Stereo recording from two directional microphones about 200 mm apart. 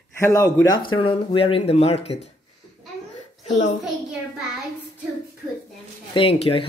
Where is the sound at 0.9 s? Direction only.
25° left (ahead or behind).